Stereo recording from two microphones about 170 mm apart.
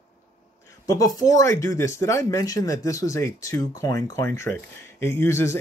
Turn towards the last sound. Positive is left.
turn(degrees=15)  # may be behind; listen again after turning